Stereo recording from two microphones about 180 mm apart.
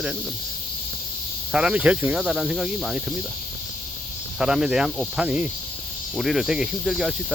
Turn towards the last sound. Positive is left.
turn(degrees=0)  # may be behind; listen again after turning